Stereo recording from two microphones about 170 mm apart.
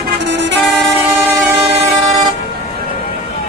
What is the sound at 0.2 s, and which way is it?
Vehicle, 90° right.